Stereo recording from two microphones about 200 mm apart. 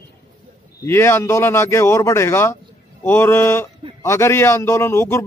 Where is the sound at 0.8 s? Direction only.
10° left (ahead or behind).